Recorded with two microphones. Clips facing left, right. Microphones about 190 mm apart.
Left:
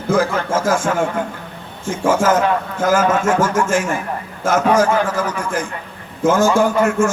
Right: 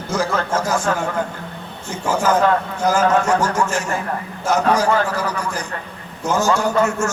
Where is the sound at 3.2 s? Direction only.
90° left.